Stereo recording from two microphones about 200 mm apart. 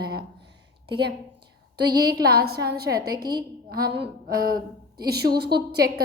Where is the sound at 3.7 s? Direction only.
50° right (ahead or behind).